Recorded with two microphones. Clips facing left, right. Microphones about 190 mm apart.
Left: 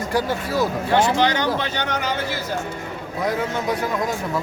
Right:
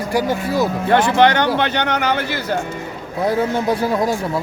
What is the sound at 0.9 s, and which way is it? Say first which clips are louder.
Speech: right 6 dB; 60° right (ahead or behind).